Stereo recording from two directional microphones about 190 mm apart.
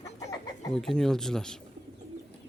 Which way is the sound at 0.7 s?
Centre (ahead or behind).